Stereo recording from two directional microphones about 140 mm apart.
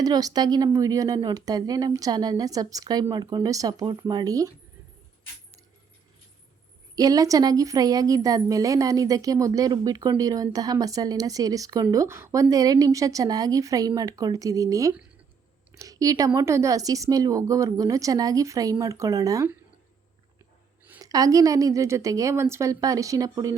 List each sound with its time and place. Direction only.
0.0 s speech: 25° right (ahead or behind)
6.9 s speech: 25° right (ahead or behind)
21.0 s speech: 25° right (ahead or behind)